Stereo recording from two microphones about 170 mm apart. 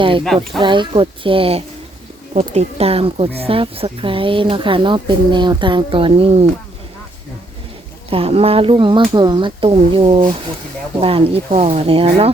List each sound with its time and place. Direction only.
0.6 s speech: 30° right (ahead or behind)
8.1 s speech: 35° right (ahead or behind)